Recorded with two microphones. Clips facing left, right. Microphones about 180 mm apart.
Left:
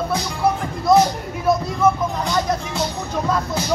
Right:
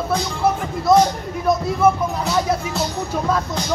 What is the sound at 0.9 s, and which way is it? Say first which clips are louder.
Music: even; centre (ahead or behind).